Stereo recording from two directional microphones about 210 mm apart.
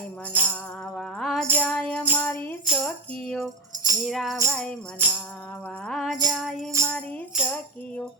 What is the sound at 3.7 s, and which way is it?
Music, 20° right (ahead or behind).